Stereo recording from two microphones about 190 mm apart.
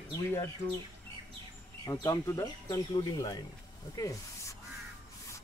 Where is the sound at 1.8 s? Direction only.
20° left (ahead or behind).